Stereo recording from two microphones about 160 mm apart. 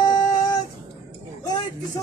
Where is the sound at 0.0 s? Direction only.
25° left (ahead or behind).